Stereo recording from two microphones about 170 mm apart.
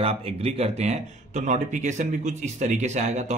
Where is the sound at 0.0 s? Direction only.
35° right (ahead or behind).